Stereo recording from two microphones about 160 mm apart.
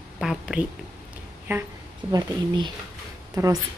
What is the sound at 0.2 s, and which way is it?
Speech, 5° right (ahead or behind).